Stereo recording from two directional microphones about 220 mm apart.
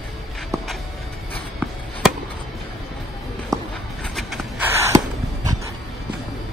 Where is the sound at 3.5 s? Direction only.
15° right (ahead or behind).